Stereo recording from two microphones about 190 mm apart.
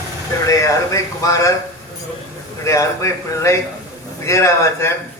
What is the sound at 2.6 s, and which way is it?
A man's voice, 15° left (ahead or behind).